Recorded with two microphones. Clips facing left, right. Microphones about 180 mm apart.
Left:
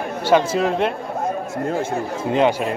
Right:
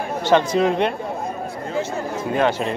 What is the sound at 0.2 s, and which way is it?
Speech, 10° left (ahead or behind).